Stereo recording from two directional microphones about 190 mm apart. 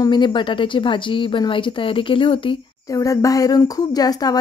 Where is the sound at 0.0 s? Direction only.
25° left (ahead or behind).